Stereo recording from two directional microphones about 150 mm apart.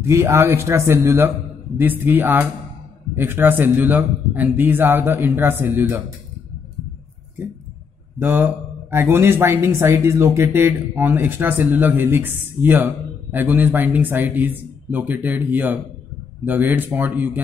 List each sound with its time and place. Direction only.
0.0 s speech: 20° right (ahead or behind)
8.2 s speech: 15° right (ahead or behind)